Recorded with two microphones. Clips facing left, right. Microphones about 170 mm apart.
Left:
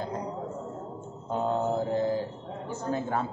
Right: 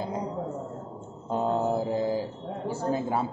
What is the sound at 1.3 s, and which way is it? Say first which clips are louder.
Mantra: right 2 dB; 5° right (ahead or behind).